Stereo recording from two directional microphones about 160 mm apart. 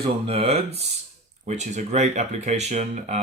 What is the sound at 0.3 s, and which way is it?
Speech, 40° right (ahead or behind).